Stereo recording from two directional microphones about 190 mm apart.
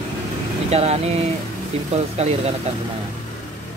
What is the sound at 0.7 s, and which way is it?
Speech, 35° right (ahead or behind).